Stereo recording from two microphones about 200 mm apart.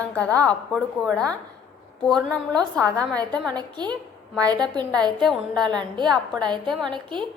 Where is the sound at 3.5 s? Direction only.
20° right (ahead or behind).